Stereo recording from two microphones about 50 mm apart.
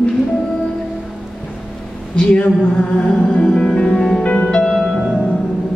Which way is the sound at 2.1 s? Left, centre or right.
Left.